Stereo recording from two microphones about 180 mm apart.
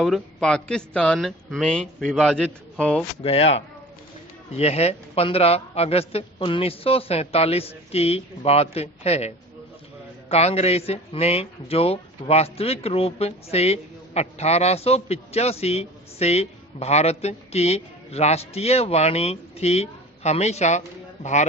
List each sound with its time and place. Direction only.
0.0 s speech: 5° left (ahead or behind)
3.2 s a man's voice: 35° left (ahead or behind)